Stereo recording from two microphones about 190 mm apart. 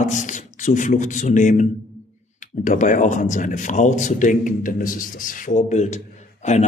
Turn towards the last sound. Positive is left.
turn(degrees=35)  # may be behind; listen again after turning